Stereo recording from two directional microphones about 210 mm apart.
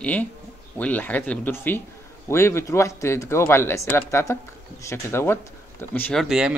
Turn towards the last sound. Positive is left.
turn(degrees=-5)  # may be behind; listen again after turning